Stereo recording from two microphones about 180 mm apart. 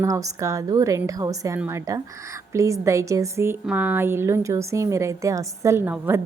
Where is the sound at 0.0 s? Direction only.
20° right (ahead or behind).